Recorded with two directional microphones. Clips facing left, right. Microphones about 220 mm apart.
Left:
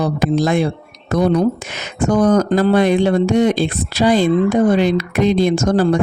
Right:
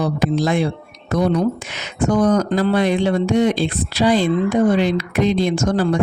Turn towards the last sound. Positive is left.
turn(degrees=40)  # may be behind; listen again after turning